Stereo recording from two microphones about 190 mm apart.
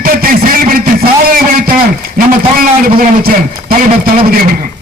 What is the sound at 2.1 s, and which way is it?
A man's voice, 50° right (ahead or behind).